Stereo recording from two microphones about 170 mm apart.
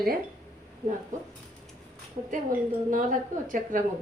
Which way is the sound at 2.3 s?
50° right (ahead or behind).